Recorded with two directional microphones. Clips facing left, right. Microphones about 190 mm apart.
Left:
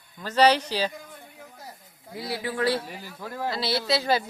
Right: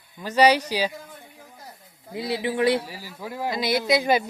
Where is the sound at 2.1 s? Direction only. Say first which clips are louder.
Right 5 dB; 20° right (ahead or behind).